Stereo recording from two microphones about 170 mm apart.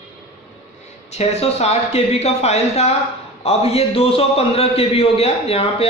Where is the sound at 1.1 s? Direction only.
40° left (ahead or behind).